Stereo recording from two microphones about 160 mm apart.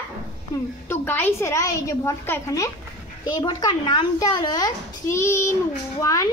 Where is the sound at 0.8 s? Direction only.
10° left (ahead or behind).